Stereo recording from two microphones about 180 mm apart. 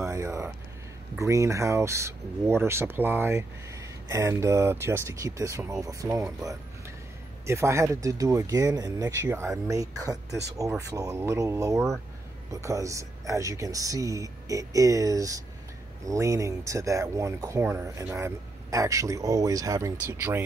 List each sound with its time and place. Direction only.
0.0 s speech: 15° right (ahead or behind)